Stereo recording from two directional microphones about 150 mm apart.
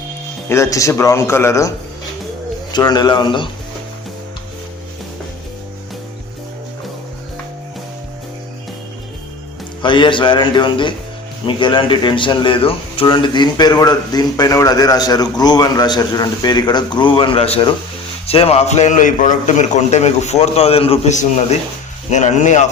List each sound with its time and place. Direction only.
0.4 s speech: 20° left (ahead or behind)
2.7 s speech: 30° left (ahead or behind)
9.8 s a man's voice: 30° left (ahead or behind); by 22.6 s 55° left (ahead or behind)